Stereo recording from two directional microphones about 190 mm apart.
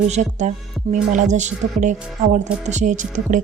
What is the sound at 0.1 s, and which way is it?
Music, 40° right (ahead or behind).